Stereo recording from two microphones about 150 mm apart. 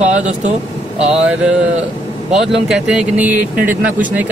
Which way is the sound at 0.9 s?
5° right (ahead or behind).